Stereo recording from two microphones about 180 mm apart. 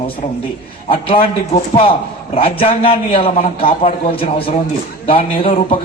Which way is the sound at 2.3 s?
30° left (ahead or behind).